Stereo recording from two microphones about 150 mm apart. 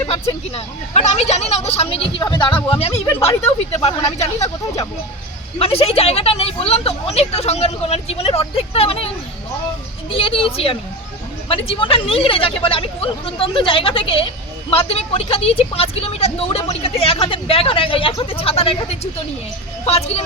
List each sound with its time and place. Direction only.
0.1 s a woman's voice: 40° left (ahead or behind)
4.4 s speech: 20° left (ahead or behind)
5.5 s a woman's voice: 40° left (ahead or behind)
10.1 s a woman's voice: 35° left (ahead or behind)